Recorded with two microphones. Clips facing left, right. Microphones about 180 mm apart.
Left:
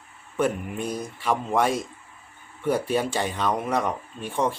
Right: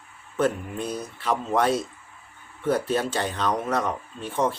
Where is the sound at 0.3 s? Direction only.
10° left (ahead or behind).